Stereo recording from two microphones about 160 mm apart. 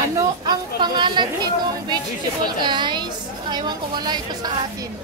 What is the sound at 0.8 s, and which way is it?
A woman's voice, 30° right (ahead or behind).